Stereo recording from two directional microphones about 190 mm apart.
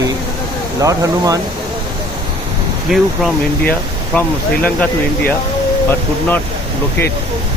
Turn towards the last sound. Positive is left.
turn(degrees=10)  # may be behind; listen again after turning